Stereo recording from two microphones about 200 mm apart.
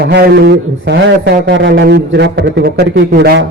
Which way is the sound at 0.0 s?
55° right (ahead or behind).